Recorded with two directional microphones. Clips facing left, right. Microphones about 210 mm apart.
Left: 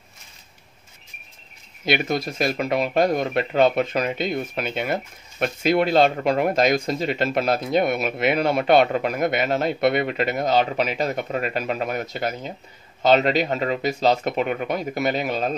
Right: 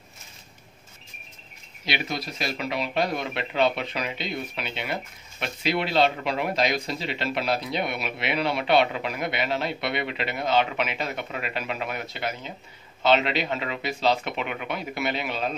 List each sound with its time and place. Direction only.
1.9 s speech: 50° left (ahead or behind)